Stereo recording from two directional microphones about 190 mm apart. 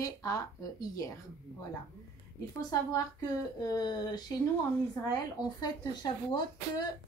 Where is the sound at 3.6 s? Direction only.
20° left (ahead or behind).